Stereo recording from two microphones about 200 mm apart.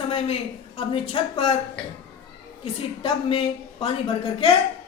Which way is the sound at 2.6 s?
30° left (ahead or behind).